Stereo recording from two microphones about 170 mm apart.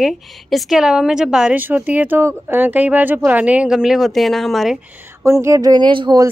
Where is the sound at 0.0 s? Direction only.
Centre (ahead or behind).